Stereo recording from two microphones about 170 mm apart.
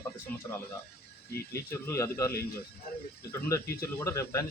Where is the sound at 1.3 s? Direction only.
65° left (ahead or behind).